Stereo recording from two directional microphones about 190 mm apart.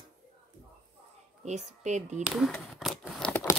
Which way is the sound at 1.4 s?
40° right (ahead or behind).